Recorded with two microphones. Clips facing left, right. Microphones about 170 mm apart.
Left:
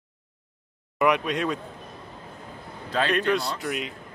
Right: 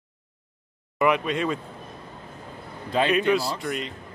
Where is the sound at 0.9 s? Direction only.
Centre (ahead or behind).